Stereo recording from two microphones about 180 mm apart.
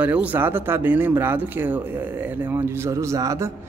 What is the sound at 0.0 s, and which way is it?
Speech, 10° right (ahead or behind).